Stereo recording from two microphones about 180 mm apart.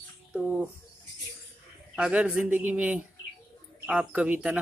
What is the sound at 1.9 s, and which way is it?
Speech, 5° right (ahead or behind).